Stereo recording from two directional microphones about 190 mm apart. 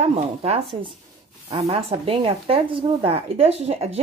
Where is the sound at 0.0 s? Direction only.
35° right (ahead or behind).